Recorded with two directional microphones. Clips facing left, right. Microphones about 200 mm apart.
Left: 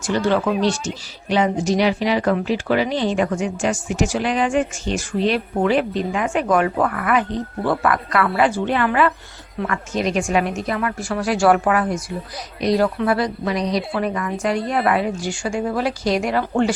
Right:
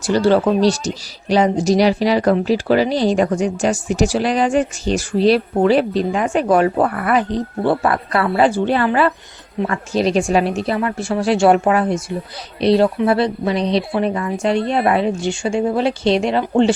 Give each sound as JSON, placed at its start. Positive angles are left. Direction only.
{"t": 0.0, "sound": "a woman's voice", "side_deg": -35}